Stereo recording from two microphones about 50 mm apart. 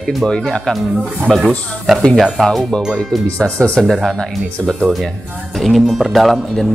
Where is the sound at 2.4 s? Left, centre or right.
Centre.